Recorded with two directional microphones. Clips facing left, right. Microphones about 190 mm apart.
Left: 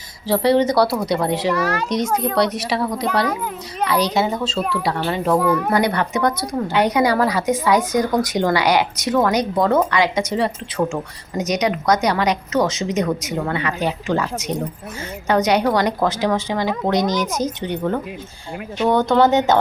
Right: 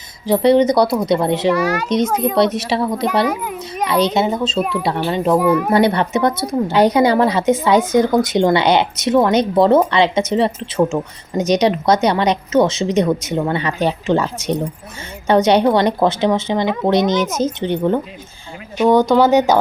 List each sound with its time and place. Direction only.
0.3 s speech: 20° right (ahead or behind)
1.5 s a child's voice: 10° right (ahead or behind)
1.9 s speech: 20° right (ahead or behind)
3.2 s a child's voice: 10° right (ahead or behind)
3.8 s a child's voice: 25° right (ahead or behind)
19.0 s speech: centre (ahead or behind)